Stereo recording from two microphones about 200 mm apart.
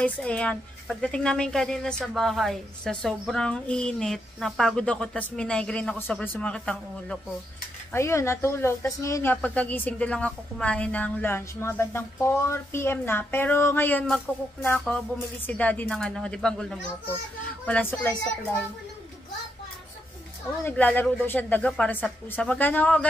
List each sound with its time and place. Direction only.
0.0 s a woman's voice: 5° left (ahead or behind)
20.6 s a woman's voice: 10° left (ahead or behind)